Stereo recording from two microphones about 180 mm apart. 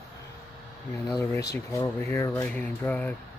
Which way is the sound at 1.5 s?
15° left (ahead or behind).